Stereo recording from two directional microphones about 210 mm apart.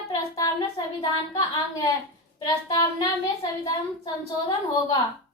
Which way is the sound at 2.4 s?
15° left (ahead or behind).